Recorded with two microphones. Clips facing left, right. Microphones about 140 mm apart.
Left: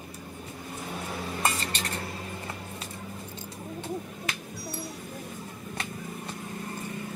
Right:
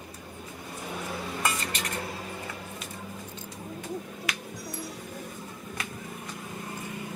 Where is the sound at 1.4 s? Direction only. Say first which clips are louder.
Left 1 dB; 30° left (ahead or behind).